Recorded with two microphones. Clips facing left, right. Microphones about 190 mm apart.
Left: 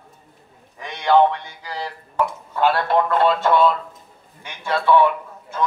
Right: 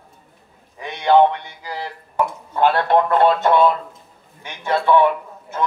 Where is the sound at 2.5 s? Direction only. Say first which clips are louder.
Right 3 dB; 20° right (ahead or behind).